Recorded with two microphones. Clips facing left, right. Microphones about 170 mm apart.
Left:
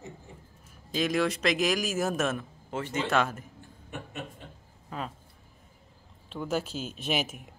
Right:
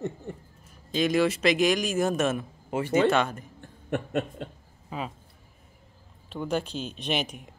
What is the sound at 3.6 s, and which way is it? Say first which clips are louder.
Chuckle: right 11 dB; 60° right (ahead or behind).